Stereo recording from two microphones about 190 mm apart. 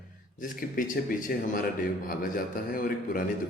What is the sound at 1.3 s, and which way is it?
A man's voice, 50° left (ahead or behind).